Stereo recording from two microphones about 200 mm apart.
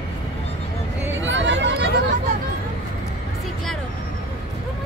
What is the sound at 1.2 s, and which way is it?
Hubbub, 65° right (ahead or behind).